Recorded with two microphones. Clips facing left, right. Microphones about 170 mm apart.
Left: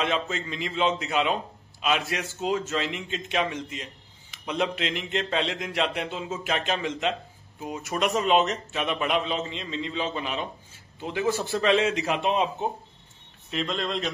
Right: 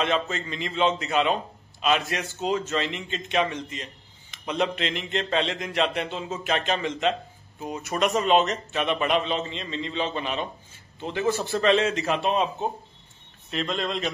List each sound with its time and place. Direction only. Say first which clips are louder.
0.0 s a man's voice: right 2 dB; centre (ahead or behind)
12.1 s a man's voice: right 1 dB; 15° left (ahead or behind)
13.5 s a man's voice: right 1 dB; centre (ahead or behind)